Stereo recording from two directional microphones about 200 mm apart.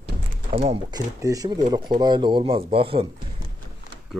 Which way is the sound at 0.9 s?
20° right (ahead or behind).